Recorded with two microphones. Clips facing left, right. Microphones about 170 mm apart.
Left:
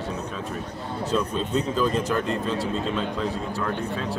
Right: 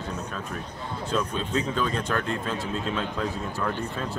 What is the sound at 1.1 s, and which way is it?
Speech, centre (ahead or behind).